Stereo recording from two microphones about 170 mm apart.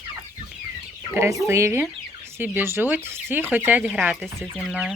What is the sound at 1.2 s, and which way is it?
Speech, 20° right (ahead or behind).